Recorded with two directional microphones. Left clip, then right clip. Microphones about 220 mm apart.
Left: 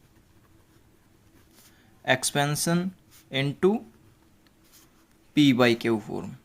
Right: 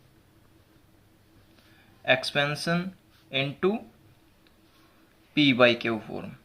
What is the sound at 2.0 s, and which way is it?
Speech, 40° left (ahead or behind).